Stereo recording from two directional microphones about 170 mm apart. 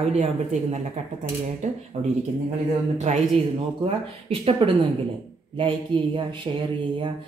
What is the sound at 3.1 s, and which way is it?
A woman's voice, 40° right (ahead or behind).